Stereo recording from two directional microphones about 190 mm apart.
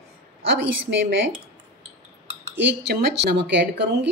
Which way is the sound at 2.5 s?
65° right (ahead or behind).